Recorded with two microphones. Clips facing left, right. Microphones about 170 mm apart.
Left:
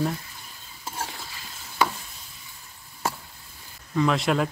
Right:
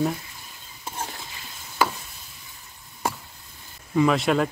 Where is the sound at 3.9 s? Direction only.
5° right (ahead or behind).